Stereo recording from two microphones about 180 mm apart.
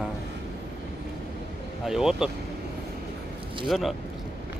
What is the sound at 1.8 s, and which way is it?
Speech, centre (ahead or behind).